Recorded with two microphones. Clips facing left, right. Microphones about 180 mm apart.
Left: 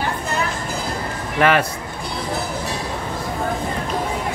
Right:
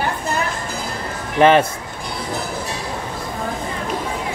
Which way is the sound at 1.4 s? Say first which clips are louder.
Right 4 dB; 25° right (ahead or behind).